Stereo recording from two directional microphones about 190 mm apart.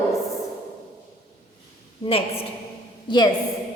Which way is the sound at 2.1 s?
30° left (ahead or behind).